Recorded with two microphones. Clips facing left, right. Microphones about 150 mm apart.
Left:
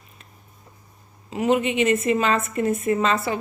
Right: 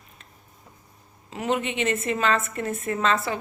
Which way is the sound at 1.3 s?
10° left (ahead or behind).